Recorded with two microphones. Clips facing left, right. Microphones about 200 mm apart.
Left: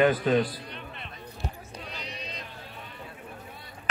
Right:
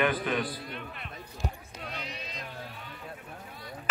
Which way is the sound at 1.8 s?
55° right (ahead or behind).